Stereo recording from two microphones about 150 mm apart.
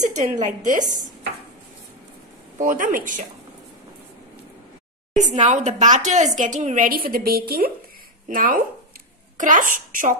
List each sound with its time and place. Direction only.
0.0 s speech: 55° right (ahead or behind)
2.6 s speech: 65° right (ahead or behind)
5.1 s speech: 50° right (ahead or behind); by 7.7 s 90° right
8.3 s speech: 65° right (ahead or behind)